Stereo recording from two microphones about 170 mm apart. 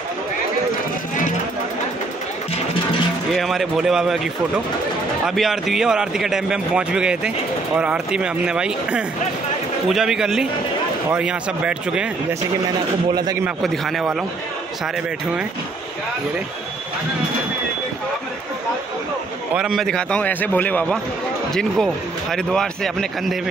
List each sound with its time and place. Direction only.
3.3 s speech: centre (ahead or behind)
13.1 s speech: 25° right (ahead or behind)
13.6 s speech: centre (ahead or behind)
19.5 s speech: 5° right (ahead or behind)